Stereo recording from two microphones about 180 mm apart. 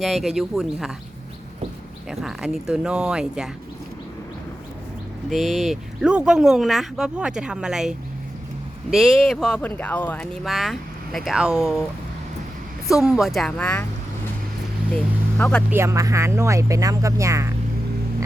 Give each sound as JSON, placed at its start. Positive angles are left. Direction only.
{"t": 0.0, "sound": "speech", "side_deg": 0}
{"t": 2.0, "sound": "speech", "side_deg": 0}
{"t": 5.3, "sound": "speech", "side_deg": 0}
{"t": 12.9, "sound": "speech", "side_deg": -5}
{"t": 15.4, "sound": "speech", "side_deg": 5}
{"t": 15.7, "sound": "speech", "side_deg": -15}